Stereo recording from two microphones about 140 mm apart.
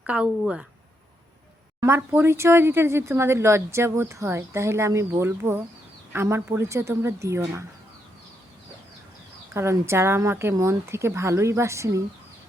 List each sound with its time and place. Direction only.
0.0 s speech: 10° right (ahead or behind)
1.8 s speech: 15° right (ahead or behind)
9.6 s speech: 20° right (ahead or behind)